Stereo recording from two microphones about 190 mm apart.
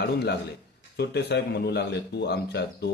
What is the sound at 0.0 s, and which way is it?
Speech, 60° left (ahead or behind).